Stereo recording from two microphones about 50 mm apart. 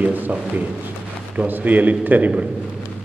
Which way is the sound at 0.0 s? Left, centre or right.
Right.